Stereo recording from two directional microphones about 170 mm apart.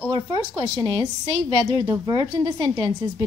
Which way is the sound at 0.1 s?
20° right (ahead or behind).